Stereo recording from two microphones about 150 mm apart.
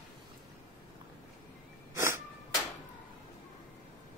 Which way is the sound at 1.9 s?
20° right (ahead or behind).